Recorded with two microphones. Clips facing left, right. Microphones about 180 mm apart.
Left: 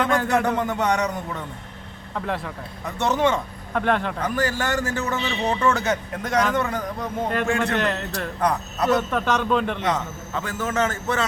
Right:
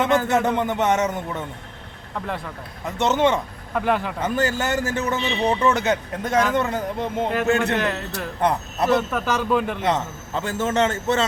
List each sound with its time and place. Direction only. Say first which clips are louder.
0.0 s a man's voice: right 2 dB; centre (ahead or behind)
0.5 s a man's voice: right 2 dB; 20° right (ahead or behind)
2.1 s a man's voice: left 1 dB; centre (ahead or behind)
2.8 s a man's voice: right 2 dB; 20° right (ahead or behind)
3.8 s a man's voice: even; 5° right (ahead or behind)
4.2 s a man's voice: right 2 dB; 25° right (ahead or behind)
7.8 s a man's voice: even; 5° right (ahead or behind)
9.8 s a man's voice: right 2 dB; 30° right (ahead or behind)